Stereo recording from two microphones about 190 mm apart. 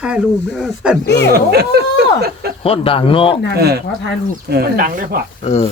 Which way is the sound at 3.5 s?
55° right (ahead or behind).